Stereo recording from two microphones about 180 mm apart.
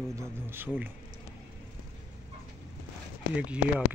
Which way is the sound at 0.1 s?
15° right (ahead or behind).